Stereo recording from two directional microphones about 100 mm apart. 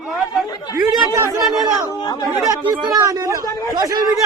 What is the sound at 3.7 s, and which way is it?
Speech, 45° right (ahead or behind).